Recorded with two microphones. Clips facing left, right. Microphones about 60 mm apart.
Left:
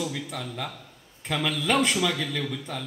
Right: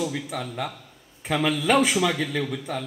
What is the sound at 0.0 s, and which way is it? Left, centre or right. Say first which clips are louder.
A man's voice: right 3 dB; centre.